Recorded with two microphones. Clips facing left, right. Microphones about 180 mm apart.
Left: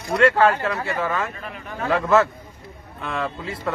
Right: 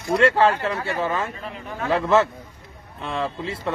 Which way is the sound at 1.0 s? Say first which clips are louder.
Even; 30° right (ahead or behind).